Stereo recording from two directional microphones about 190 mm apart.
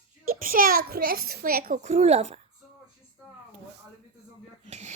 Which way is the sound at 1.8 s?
35° right (ahead or behind).